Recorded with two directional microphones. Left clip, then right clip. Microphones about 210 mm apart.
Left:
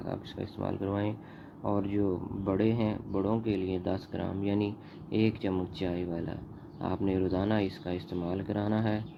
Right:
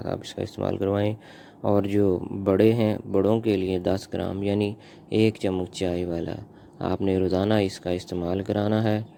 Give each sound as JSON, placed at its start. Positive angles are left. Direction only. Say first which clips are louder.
{"t": 0.0, "sound": "speech", "louder": "right 8 dB", "side_deg": -45}